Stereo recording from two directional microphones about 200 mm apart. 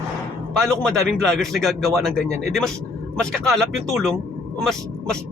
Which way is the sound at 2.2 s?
35° left (ahead or behind).